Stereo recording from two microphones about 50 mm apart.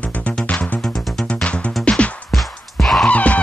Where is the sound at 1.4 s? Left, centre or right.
Left.